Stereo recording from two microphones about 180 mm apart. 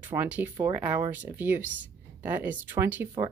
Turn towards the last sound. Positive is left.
turn(degrees=-10)  # may be behind; listen again after turning